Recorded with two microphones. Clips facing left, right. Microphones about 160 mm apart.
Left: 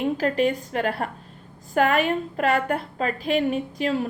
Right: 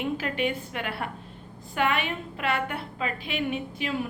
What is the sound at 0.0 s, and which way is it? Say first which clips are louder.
A woman's voice: left 6 dB; 35° left (ahead or behind).